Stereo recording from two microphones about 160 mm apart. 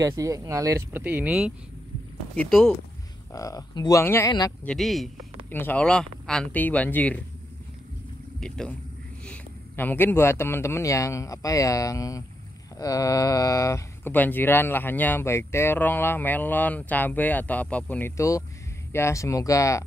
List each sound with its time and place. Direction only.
0.0 s speech: 20° right (ahead or behind); by 2.7 s centre (ahead or behind)
3.3 s speech: 20° left (ahead or behind)
4.3 s speech: 25° left (ahead or behind)
4.6 s speech: centre (ahead or behind)
5.5 s speech: 10° left (ahead or behind)
8.4 s speech: 5° left (ahead or behind); by 19.8 s 20° left (ahead or behind)